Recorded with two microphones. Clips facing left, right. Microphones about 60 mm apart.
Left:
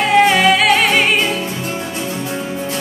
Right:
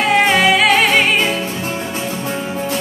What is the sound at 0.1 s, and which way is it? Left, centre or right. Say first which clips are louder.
Music: left 2 dB; centre.